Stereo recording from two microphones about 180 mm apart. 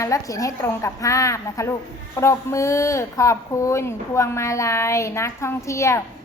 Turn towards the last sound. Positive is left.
turn(degrees=15)  # may be behind; listen again after turning